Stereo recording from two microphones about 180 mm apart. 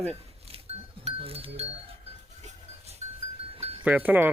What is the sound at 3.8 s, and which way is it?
Speech, 10° right (ahead or behind).